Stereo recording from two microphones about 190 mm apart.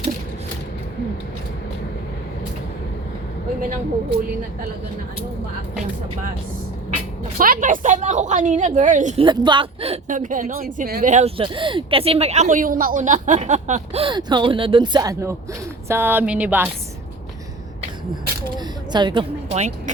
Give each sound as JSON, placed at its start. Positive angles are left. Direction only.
{"t": 7.3, "sound": "speech", "side_deg": -45}
{"t": 9.2, "sound": "speech", "side_deg": -25}
{"t": 18.9, "sound": "a woman's voice", "side_deg": -25}